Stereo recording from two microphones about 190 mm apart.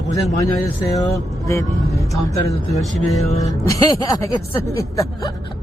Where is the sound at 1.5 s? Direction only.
15° left (ahead or behind).